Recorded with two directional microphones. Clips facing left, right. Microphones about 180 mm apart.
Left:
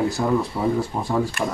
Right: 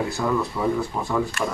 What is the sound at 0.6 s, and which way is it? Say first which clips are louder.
Speech: left 1 dB; 25° left (ahead or behind).